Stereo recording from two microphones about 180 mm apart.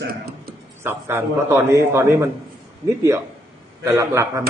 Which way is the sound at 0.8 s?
10° right (ahead or behind).